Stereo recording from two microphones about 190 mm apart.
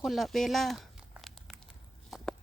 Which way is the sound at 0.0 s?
Centre (ahead or behind).